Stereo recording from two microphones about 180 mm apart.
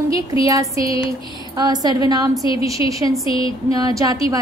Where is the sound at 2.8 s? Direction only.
30° left (ahead or behind).